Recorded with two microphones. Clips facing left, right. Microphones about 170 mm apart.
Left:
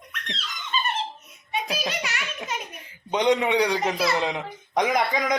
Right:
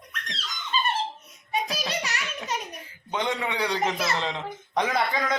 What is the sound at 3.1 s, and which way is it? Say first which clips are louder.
Speech: left 7 dB; 20° left (ahead or behind).